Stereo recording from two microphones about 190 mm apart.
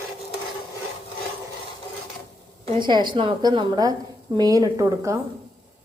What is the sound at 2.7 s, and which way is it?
A woman's voice, 25° right (ahead or behind).